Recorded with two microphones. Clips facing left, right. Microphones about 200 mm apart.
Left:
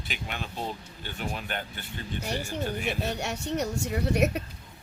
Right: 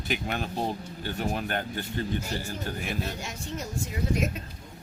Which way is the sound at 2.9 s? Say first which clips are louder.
Left 3 dB; 70° left (ahead or behind).